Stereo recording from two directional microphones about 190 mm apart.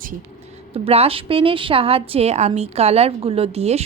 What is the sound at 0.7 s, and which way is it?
Speech, 30° right (ahead or behind).